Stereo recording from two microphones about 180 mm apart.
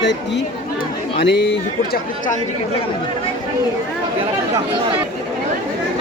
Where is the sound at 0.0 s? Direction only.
75° left (ahead or behind).